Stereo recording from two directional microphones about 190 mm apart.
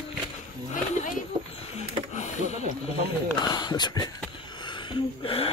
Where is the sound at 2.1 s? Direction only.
40° left (ahead or behind).